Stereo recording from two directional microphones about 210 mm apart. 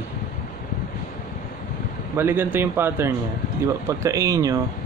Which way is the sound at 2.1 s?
10° right (ahead or behind).